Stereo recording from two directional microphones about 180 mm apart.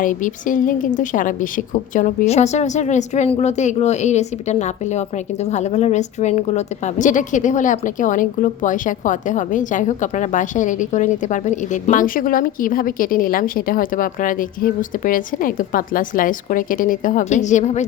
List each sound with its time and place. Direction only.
0.0 s a woman's voice: 45° left (ahead or behind)